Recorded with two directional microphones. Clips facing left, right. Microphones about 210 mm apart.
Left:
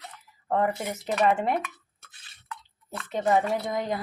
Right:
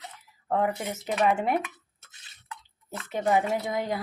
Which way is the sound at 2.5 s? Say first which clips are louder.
Left 1 dB; 20° right (ahead or behind).